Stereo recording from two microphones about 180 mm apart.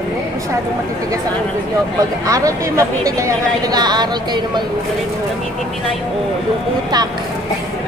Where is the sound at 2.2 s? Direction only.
20° right (ahead or behind).